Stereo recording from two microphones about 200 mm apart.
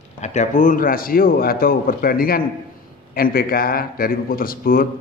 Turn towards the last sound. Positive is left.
turn(degrees=45)  # may be behind; listen again after turning